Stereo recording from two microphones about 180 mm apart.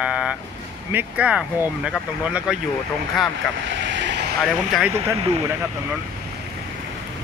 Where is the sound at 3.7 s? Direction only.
80° right.